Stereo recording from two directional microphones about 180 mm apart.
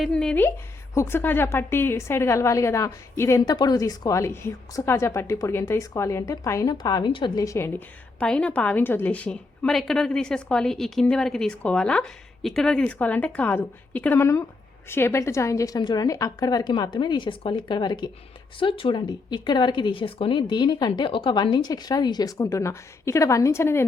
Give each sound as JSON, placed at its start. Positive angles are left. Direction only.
{"t": 0.0, "sound": "a woman's voice", "side_deg": 5}
{"t": 8.2, "sound": "a woman's voice", "side_deg": 5}